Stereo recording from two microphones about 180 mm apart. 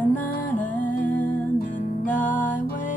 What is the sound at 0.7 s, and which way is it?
Music, 45° left (ahead or behind).